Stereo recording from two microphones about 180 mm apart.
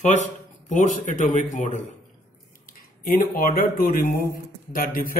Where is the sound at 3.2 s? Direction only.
50° left (ahead or behind).